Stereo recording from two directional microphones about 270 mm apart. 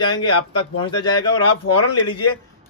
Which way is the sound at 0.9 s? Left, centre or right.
Left.